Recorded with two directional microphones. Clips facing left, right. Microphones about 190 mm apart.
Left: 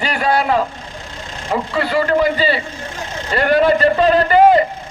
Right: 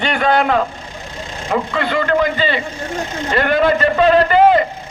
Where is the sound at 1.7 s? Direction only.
35° left (ahead or behind).